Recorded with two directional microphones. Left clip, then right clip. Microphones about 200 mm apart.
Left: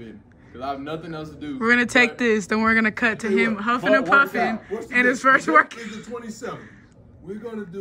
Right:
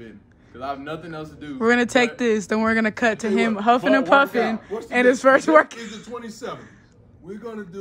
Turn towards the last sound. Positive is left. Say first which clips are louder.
# left 1 dB
turn(degrees=-5)  # may be behind; listen again after turning